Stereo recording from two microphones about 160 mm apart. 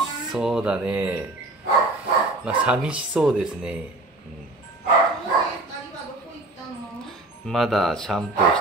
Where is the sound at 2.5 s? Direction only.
5° right (ahead or behind).